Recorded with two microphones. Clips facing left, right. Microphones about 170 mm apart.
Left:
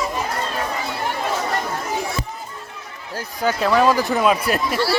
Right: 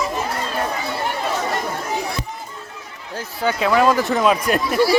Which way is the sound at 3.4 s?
5° right (ahead or behind).